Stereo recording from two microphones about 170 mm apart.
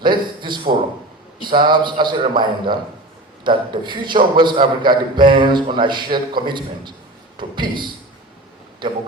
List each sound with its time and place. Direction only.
0.0 s a man's voice: 25° right (ahead or behind)